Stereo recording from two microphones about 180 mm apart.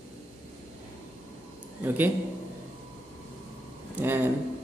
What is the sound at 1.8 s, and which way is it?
Speech, 10° right (ahead or behind).